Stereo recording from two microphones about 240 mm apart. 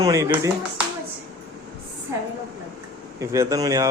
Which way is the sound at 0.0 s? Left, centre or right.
Centre.